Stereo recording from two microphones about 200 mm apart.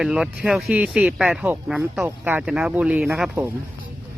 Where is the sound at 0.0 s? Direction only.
5° right (ahead or behind).